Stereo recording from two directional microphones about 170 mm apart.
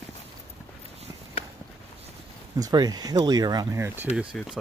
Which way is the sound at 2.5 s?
20° right (ahead or behind).